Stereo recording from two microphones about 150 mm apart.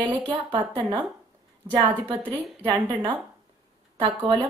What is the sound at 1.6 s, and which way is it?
A woman's voice, 30° right (ahead or behind).